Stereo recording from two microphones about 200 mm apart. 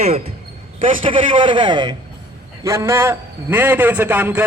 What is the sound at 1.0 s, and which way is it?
A man's voice, 25° right (ahead or behind).